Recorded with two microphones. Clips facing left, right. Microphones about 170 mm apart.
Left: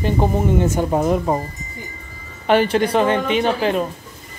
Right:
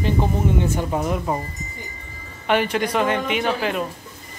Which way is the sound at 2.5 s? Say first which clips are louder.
Left 5 dB; 35° left (ahead or behind).